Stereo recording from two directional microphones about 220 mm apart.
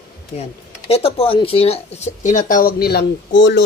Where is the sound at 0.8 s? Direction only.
25° left (ahead or behind); by 3.6 s 55° left (ahead or behind).